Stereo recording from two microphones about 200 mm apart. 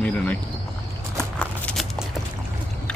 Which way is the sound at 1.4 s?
5° left (ahead or behind).